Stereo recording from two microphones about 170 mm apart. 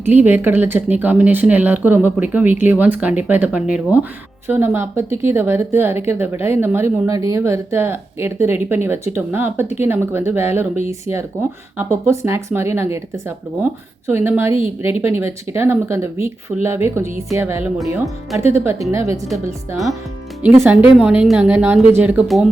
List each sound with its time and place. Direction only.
0.0 s speech: 10° right (ahead or behind)
20.4 s speech: 10° right (ahead or behind)